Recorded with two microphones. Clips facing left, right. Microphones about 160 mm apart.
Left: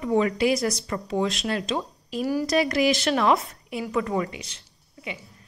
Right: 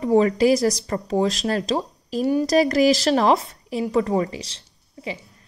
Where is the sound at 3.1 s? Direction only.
25° right (ahead or behind).